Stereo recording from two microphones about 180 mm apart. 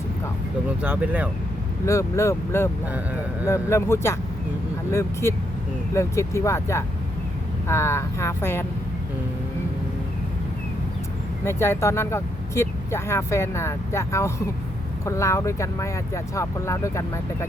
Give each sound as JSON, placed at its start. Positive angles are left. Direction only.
{"t": 0.8, "sound": "speech", "side_deg": -10}
{"t": 1.8, "sound": "speech", "side_deg": 15}
{"t": 11.4, "sound": "speech", "side_deg": 15}